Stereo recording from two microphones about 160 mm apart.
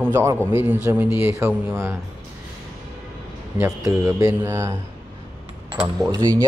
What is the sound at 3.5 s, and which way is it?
A man's voice, 15° right (ahead or behind).